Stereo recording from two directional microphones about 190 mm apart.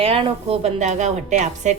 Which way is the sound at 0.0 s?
30° right (ahead or behind).